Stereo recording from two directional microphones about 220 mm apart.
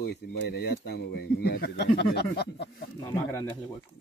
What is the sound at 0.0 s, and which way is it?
Speech, 45° left (ahead or behind).